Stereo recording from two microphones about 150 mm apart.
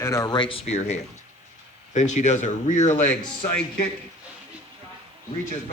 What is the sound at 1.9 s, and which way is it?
Speech, 50° left (ahead or behind).